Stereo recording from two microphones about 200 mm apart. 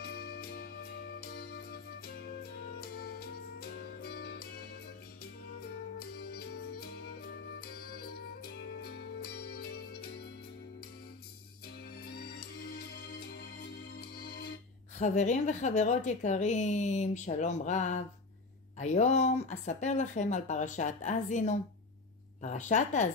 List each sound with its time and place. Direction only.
0.0 s music: 50° left (ahead or behind)
2.8 s music: 50° left (ahead or behind)
5.9 s music: 50° left (ahead or behind)
12.0 s music: 50° left (ahead or behind)
15.0 s a woman's voice: 35° left (ahead or behind)